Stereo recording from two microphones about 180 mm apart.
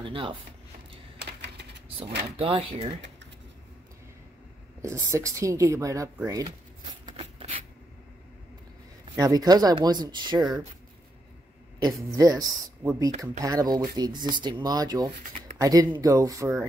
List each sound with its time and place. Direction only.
0.0 s speech: 30° right (ahead or behind)
1.2 s typewriter: 70° right (ahead or behind)
2.3 s speech: 30° right (ahead or behind)
5.1 s speech: 15° right (ahead or behind)
7.2 s a sound: 35° right (ahead or behind)
9.0 s speech: 20° right (ahead or behind)
11.8 s speech: 20° right (ahead or behind)